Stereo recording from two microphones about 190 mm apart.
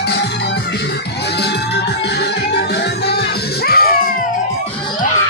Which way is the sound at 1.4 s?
60° left (ahead or behind).